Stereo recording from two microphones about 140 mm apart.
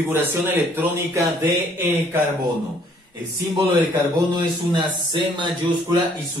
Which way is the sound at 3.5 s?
35° right (ahead or behind).